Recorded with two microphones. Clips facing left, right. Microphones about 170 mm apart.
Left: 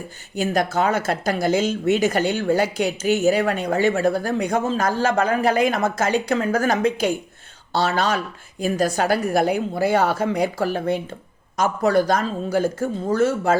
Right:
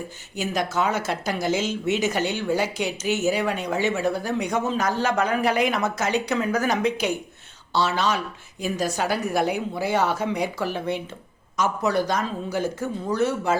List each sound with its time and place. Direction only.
0.5 s a woman's voice: 55° left (ahead or behind)